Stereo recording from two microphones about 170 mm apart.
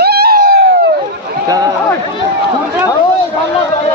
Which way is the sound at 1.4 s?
20° right (ahead or behind).